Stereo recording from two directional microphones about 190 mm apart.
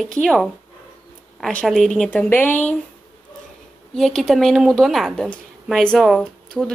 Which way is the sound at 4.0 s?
Centre (ahead or behind).